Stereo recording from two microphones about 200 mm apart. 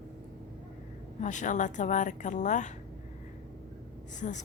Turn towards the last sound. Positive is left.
turn(degrees=35)  # may be behind; listen again after turning